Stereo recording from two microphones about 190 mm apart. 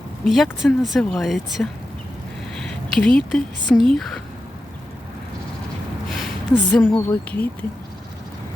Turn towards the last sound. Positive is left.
turn(degrees=10)  # may be behind; listen again after turning